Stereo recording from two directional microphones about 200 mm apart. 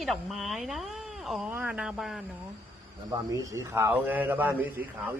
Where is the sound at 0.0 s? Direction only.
Centre (ahead or behind).